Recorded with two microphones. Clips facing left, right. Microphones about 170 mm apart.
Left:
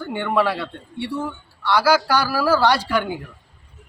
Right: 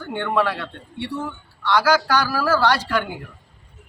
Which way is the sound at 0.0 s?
10° left (ahead or behind).